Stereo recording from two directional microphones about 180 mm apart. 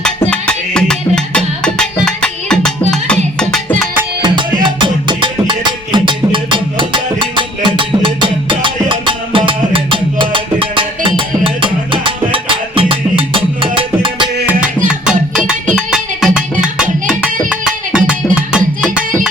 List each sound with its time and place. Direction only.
0.3 s music: 5° left (ahead or behind)
4.6 s music: 25° right (ahead or behind)
15.7 s music: 5° right (ahead or behind)